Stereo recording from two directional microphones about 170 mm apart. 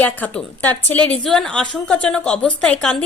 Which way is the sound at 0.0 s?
10° left (ahead or behind).